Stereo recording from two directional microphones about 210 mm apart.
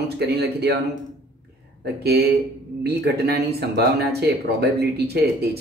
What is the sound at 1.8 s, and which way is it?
Speech, 50° right (ahead or behind).